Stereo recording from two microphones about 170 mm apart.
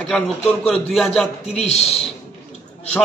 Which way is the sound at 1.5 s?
40° left (ahead or behind).